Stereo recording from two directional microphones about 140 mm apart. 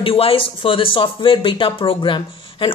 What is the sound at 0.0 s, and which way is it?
Speech, 40° left (ahead or behind).